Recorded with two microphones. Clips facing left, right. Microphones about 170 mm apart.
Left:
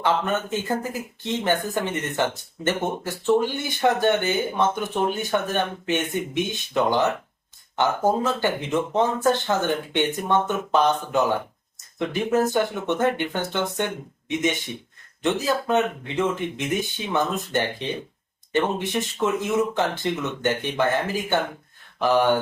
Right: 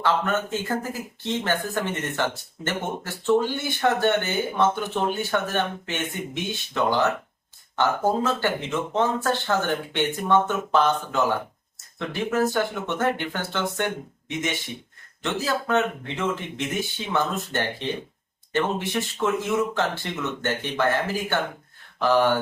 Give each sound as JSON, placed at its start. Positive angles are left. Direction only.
{"t": 0.0, "sound": "speech", "side_deg": 20}